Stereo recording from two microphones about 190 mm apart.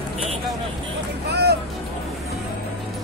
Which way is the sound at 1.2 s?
60° right (ahead or behind).